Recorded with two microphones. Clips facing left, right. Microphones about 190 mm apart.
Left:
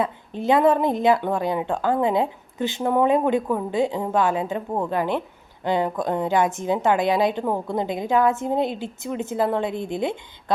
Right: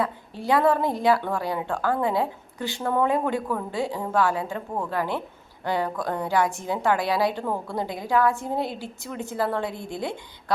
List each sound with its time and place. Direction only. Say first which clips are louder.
0.0 s speech: left 3 dB; 20° left (ahead or behind)